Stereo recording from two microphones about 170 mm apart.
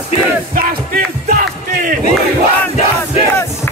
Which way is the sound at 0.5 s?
60° right (ahead or behind).